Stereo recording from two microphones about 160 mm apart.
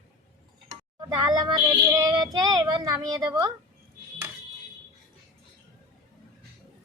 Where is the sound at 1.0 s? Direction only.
25° right (ahead or behind).